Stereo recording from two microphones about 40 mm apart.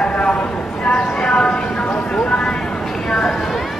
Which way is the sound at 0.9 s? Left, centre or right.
Centre.